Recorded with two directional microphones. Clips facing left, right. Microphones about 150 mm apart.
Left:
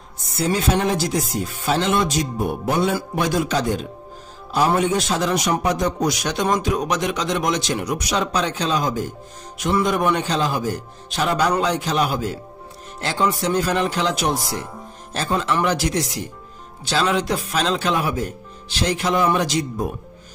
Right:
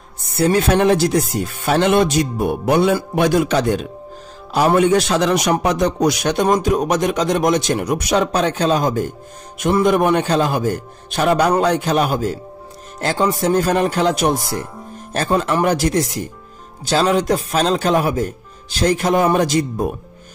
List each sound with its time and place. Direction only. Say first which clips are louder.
0.3 s a man's voice: right 5 dB; 60° right (ahead or behind)